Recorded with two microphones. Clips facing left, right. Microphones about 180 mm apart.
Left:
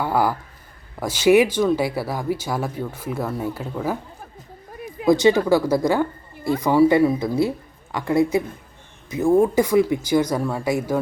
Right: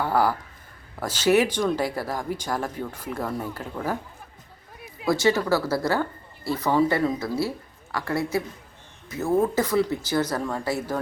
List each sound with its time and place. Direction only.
0.0 s speech: 10° left (ahead or behind)
5.0 s speech: 15° left (ahead or behind)